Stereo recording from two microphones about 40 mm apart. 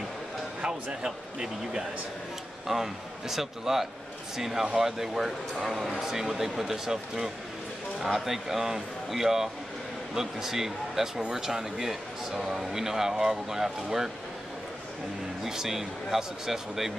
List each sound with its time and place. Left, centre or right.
0.6 s speech: centre
15.4 s speech: centre